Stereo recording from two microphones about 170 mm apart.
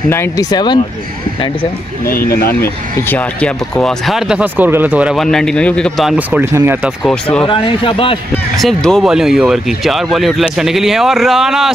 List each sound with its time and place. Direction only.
0.1 s speech: 20° left (ahead or behind)
2.0 s speech: 60° left (ahead or behind)
2.6 s speech: 15° left (ahead or behind); by 6.9 s 15° right (ahead or behind)
7.0 s speech: 5° left (ahead or behind)
7.4 s speech: 30° left (ahead or behind)
8.5 s speech: centre (ahead or behind)